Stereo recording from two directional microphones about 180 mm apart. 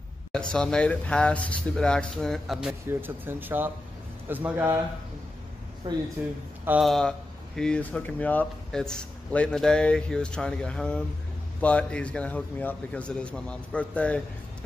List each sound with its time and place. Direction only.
0.3 s speech: 5° left (ahead or behind)
2.9 s speech: 10° right (ahead or behind)
5.9 s speech: 25° right (ahead or behind)
6.6 s speech: 10° right (ahead or behind)
6.9 s a man's voice: 5° left (ahead or behind)